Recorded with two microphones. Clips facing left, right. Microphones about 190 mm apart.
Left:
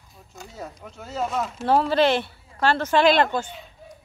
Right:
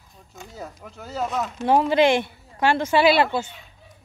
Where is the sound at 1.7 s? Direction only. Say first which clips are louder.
Right 2 dB; 15° right (ahead or behind).